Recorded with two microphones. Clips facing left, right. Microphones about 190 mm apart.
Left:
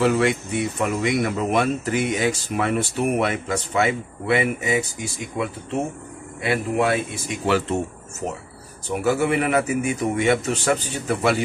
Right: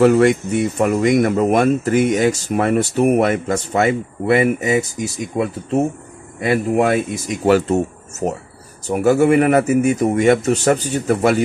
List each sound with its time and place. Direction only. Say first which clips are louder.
0.0 s speech: right 7 dB; 45° right (ahead or behind)
8.8 s speech: right 7 dB; 45° right (ahead or behind)